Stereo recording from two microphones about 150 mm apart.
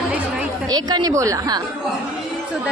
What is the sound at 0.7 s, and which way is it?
Speech, 25° right (ahead or behind).